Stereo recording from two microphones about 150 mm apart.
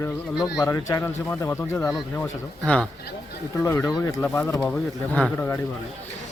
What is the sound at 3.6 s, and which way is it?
Speech, 20° left (ahead or behind).